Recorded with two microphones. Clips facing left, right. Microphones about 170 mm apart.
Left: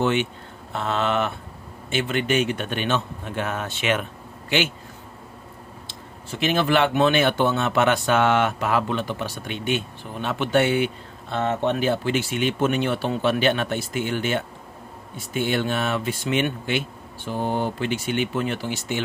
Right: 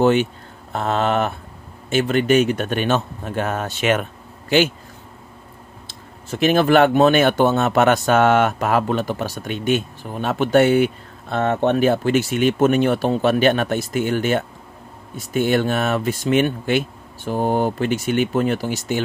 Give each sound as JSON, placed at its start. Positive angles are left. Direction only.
{"t": 0.0, "sound": "speech", "side_deg": -40}
{"t": 5.9, "sound": "speech", "side_deg": -45}